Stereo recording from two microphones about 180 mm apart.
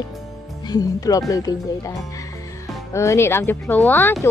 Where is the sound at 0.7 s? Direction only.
20° left (ahead or behind).